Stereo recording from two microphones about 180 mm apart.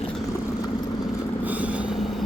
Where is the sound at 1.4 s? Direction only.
10° right (ahead or behind).